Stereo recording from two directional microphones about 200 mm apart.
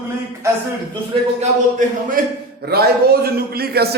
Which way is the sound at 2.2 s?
45° right (ahead or behind).